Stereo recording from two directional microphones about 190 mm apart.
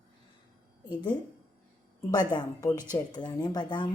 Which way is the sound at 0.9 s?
25° left (ahead or behind).